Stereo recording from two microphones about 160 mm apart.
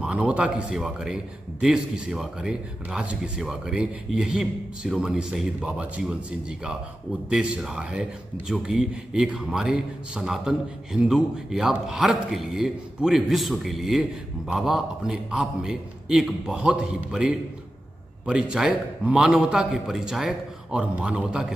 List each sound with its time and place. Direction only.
0.0 s a man's voice: 10° right (ahead or behind)
7.2 s a man's voice: 5° right (ahead or behind)